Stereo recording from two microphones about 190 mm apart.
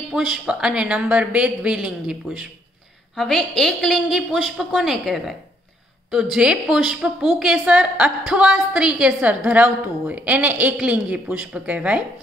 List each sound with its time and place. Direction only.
0.1 s a woman's voice: centre (ahead or behind)
6.3 s a woman's voice: 5° right (ahead or behind)